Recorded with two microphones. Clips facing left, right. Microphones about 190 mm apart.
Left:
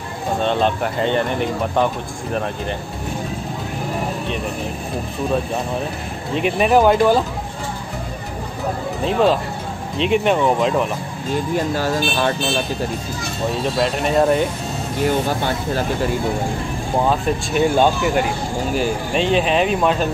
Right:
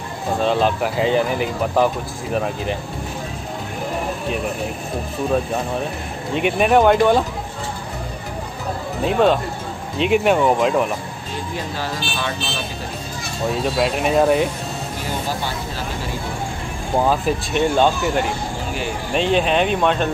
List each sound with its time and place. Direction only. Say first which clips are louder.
0.4 s speech: right 1 dB; centre (ahead or behind)
6.3 s speech: even; centre (ahead or behind)
9.0 s speech: right 1 dB; centre (ahead or behind)
11.5 s speech: left 6 dB; 45° left (ahead or behind)
13.7 s speech: even; 5° right (ahead or behind)
16.9 s speech: right 1 dB; centre (ahead or behind)
19.1 s speech: even; centre (ahead or behind)